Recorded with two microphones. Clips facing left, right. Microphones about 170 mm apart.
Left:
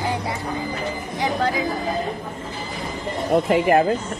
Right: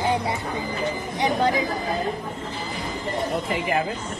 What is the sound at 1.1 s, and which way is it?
Speech, 20° right (ahead or behind).